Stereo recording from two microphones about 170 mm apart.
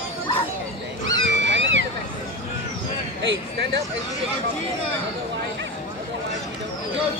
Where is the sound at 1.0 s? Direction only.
90° right.